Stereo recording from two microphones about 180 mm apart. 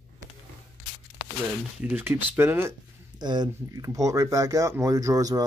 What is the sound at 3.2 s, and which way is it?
Speech, 25° right (ahead or behind).